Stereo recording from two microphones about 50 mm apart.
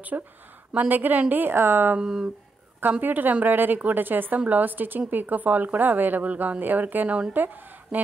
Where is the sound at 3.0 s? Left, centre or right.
Right.